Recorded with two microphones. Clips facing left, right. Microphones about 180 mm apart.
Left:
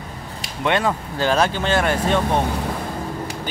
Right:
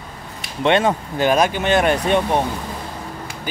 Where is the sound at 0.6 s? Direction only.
25° right (ahead or behind).